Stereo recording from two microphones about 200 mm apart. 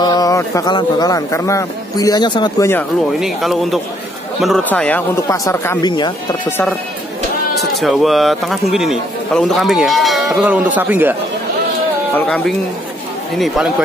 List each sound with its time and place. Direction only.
0.0 s speech: 20° left (ahead or behind)
3.2 s a man's voice: centre (ahead or behind); by 6.1 s 20° left (ahead or behind)
7.8 s a man's voice: centre (ahead or behind)
12.1 s a man's voice: 5° left (ahead or behind)